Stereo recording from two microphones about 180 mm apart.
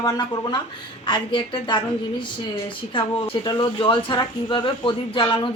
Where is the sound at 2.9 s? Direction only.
25° left (ahead or behind).